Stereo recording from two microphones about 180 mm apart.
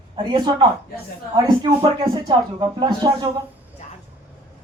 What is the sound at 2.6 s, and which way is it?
Speech, 25° right (ahead or behind).